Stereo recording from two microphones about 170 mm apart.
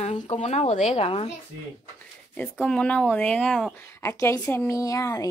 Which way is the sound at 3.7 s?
15° left (ahead or behind).